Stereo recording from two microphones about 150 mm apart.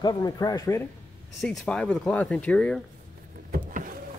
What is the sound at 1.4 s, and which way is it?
Speech, 5° left (ahead or behind).